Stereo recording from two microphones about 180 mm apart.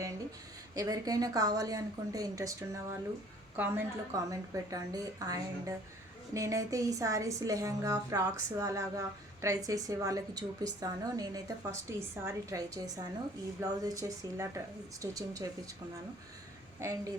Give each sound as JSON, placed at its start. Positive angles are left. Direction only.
{"t": 0.8, "sound": "a woman's voice", "side_deg": -20}
{"t": 4.1, "sound": "a woman's voice", "side_deg": -20}
{"t": 16.8, "sound": "a woman's voice", "side_deg": -15}